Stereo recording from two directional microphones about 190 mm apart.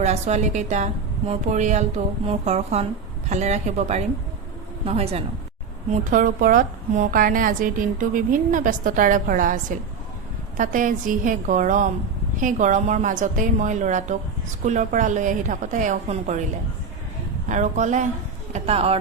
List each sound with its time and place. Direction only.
0.0 s a woman's voice: 35° right (ahead or behind)
5.9 s a woman's voice: 45° right (ahead or behind)
17.5 s a woman's voice: 40° right (ahead or behind)